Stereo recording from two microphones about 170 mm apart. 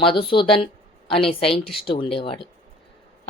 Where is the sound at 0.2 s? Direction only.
30° left (ahead or behind).